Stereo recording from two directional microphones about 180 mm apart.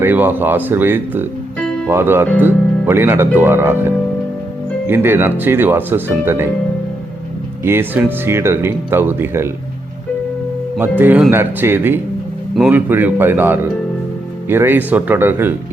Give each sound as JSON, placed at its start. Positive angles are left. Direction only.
{"t": 0.0, "sound": "speech", "side_deg": -10}
{"t": 7.6, "sound": "speech", "side_deg": -10}
{"t": 10.8, "sound": "speech", "side_deg": -10}